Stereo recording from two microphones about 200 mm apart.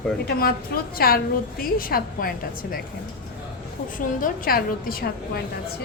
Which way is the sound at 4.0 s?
45° left (ahead or behind).